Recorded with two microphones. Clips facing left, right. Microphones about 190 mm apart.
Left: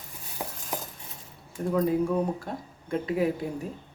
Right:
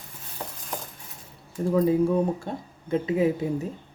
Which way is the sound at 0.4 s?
10° left (ahead or behind).